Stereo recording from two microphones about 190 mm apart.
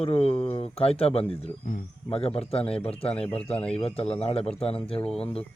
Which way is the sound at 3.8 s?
30° left (ahead or behind).